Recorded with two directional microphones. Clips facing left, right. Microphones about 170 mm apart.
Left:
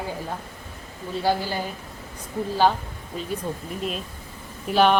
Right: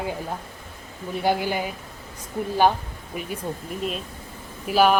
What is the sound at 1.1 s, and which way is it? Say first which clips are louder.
Speech: right 1 dB; 15° right (ahead or behind).